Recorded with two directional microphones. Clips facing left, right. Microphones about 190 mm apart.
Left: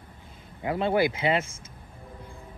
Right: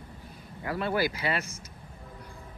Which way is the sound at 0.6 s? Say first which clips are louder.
Left 4 dB; 25° left (ahead or behind).